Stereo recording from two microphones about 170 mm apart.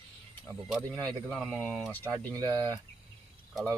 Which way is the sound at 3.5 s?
10° left (ahead or behind).